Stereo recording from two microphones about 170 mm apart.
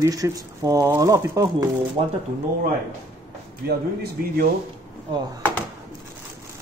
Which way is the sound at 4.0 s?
60° right (ahead or behind).